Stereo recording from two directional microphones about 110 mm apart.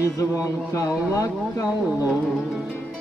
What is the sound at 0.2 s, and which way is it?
Speech, 30° left (ahead or behind).